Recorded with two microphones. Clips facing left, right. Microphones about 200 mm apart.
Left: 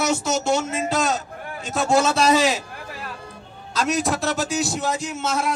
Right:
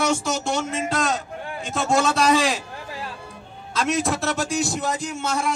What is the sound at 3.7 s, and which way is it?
A man's voice, centre (ahead or behind).